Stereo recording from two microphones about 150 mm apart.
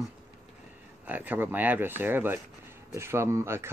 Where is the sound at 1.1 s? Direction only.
10° right (ahead or behind).